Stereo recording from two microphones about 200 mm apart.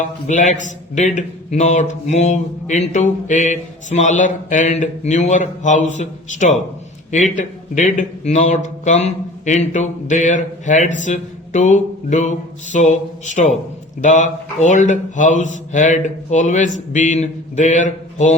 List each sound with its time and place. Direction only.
0.0 s mantra: 40° left (ahead or behind)
11.0 s music: 40° left (ahead or behind)
12.7 s mantra: 35° left (ahead or behind)